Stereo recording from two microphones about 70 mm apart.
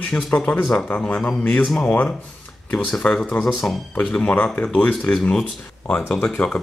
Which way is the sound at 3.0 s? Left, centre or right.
Left.